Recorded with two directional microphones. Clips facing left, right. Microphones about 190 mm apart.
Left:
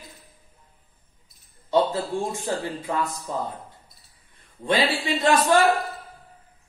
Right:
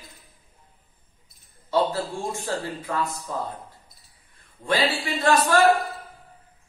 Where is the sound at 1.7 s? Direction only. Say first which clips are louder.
Left 2 dB; 20° left (ahead or behind).